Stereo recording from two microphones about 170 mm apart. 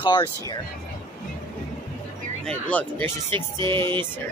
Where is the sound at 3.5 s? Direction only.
30° right (ahead or behind).